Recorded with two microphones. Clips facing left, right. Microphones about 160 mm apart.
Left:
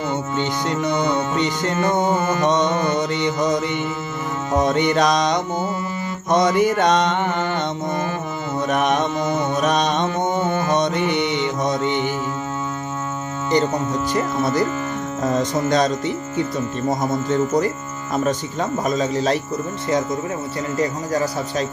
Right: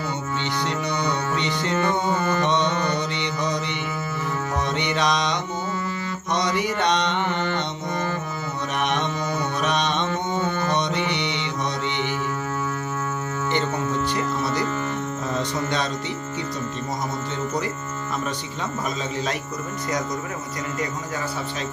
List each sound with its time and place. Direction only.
0.7 s music: 50° left (ahead or behind)
14.1 s music: 45° left (ahead or behind)
18.1 s music: 45° left (ahead or behind)
20.7 s speech: 35° left (ahead or behind)